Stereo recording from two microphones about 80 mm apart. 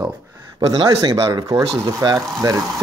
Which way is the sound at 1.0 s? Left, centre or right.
Right.